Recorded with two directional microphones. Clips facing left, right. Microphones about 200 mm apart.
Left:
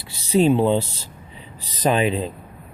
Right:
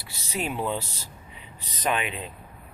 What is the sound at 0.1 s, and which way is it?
Speech, 30° left (ahead or behind).